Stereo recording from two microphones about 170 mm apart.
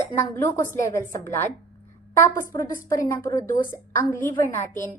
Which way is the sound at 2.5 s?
20° left (ahead or behind).